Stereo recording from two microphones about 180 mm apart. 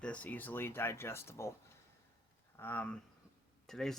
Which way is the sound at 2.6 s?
10° left (ahead or behind).